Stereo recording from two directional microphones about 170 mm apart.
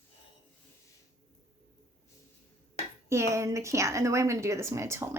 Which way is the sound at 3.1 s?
15° right (ahead or behind).